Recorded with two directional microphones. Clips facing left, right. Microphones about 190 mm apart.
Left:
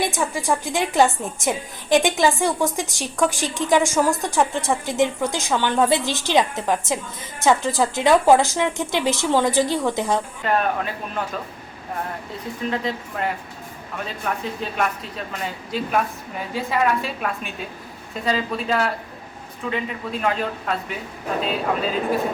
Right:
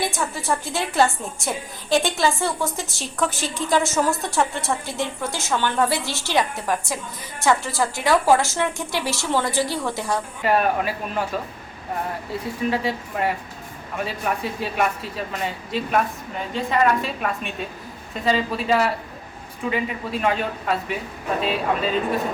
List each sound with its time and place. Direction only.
0.0 s a woman's voice: 15° left (ahead or behind)
10.4 s a man's voice: 10° right (ahead or behind)
12.7 s a man's voice: 5° right (ahead or behind)